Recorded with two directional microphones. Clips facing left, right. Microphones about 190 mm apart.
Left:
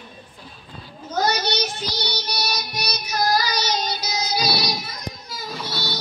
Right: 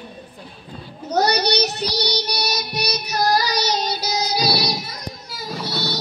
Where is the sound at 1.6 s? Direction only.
40° right (ahead or behind).